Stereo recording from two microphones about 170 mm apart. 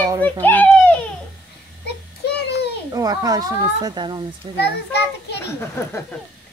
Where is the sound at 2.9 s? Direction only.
20° right (ahead or behind).